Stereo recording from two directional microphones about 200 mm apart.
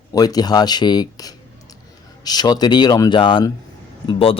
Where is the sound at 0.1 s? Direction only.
20° left (ahead or behind).